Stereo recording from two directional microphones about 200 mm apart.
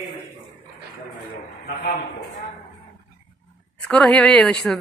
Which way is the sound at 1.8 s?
40° left (ahead or behind).